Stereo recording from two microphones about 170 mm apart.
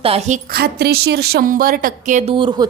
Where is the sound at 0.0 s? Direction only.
35° right (ahead or behind).